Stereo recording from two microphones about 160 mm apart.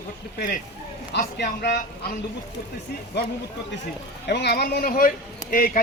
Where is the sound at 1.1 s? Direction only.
90° left.